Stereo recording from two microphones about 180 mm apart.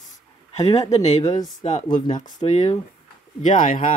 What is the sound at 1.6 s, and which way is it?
Speech, 45° left (ahead or behind).